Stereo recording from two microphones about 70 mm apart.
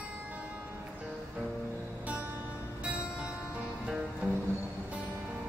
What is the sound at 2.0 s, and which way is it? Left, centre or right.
Music, centre.